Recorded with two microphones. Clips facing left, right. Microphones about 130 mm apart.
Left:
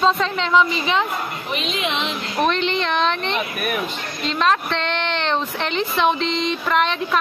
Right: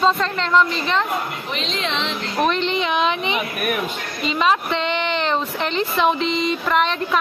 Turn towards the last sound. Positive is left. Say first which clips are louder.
# even
turn(degrees=0)  # may be behind; listen again after turning